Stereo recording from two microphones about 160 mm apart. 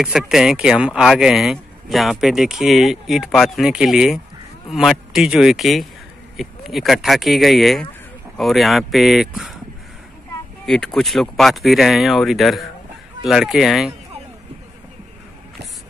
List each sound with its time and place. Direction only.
0.0 s speech: 5° right (ahead or behind)
10.6 s speech: centre (ahead or behind)